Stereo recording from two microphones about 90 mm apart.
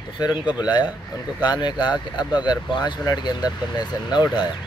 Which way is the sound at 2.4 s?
55° left (ahead or behind).